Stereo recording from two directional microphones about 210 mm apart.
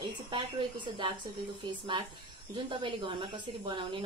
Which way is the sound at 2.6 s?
25° right (ahead or behind).